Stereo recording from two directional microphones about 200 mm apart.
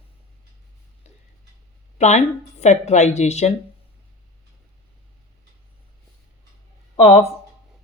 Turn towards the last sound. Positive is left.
turn(degrees=30)  # may be behind; listen again after turning